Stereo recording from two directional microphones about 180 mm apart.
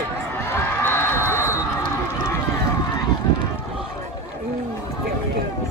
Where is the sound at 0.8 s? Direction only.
10° left (ahead or behind).